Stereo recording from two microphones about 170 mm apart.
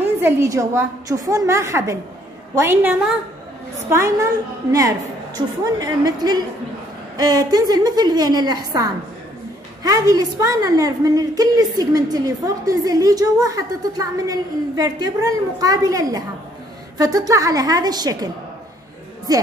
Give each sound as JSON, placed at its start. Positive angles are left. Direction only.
{"t": 0.0, "sound": "a woman's voice", "side_deg": -15}
{"t": 9.8, "sound": "a woman's voice", "side_deg": -20}